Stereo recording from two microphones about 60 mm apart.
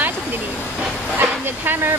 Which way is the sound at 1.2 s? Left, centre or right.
Right.